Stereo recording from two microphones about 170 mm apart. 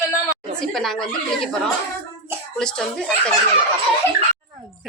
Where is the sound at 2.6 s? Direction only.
5° left (ahead or behind).